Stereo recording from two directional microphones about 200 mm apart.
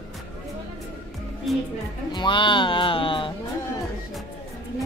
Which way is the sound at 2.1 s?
25° left (ahead or behind).